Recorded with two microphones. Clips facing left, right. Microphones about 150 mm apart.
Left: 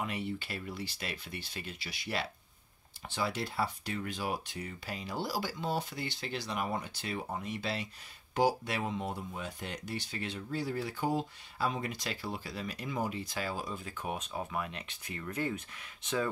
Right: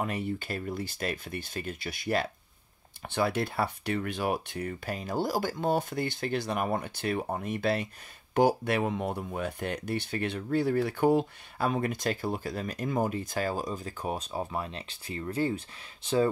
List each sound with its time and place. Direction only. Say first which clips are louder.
0.0 s speech: right 5 dB; 45° right (ahead or behind)